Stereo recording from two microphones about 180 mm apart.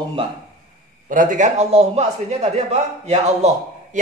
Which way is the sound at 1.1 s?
45° right (ahead or behind).